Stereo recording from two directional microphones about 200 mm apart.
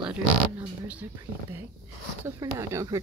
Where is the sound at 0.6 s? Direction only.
5° right (ahead or behind).